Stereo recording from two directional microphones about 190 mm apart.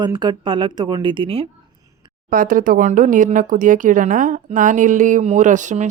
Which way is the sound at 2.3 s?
45° right (ahead or behind).